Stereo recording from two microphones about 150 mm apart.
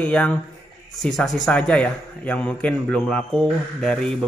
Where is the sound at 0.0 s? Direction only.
10° left (ahead or behind).